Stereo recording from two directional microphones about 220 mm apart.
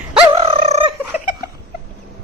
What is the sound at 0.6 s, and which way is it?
Fowl, 30° right (ahead or behind).